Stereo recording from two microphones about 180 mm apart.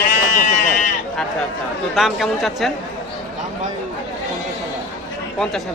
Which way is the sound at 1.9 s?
Centre (ahead or behind).